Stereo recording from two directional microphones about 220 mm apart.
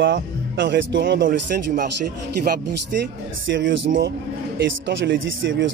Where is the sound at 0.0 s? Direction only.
55° right (ahead or behind).